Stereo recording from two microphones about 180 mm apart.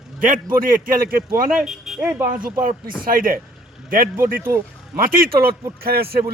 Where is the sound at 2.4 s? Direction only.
50° right (ahead or behind).